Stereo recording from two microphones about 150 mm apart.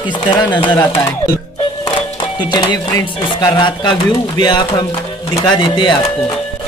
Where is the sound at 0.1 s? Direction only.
30° left (ahead or behind).